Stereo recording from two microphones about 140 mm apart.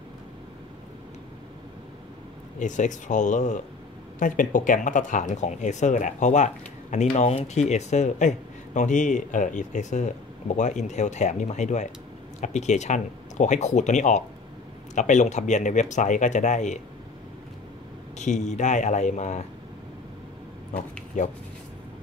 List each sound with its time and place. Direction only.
2.6 s speech: 60° left (ahead or behind)
18.2 s speech: 55° left (ahead or behind)
21.2 s speech: 60° left (ahead or behind)